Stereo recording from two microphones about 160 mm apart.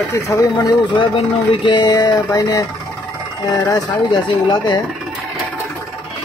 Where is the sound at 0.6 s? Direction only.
30° left (ahead or behind).